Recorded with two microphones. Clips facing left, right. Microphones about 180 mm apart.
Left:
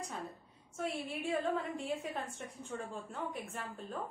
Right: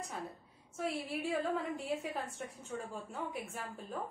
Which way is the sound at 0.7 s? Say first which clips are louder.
Right 1 dB; centre (ahead or behind).